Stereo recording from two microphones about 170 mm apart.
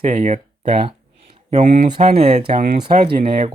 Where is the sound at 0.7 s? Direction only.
30° right (ahead or behind).